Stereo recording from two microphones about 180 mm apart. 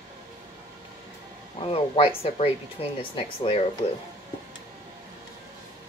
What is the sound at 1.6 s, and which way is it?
Speech, 30° left (ahead or behind).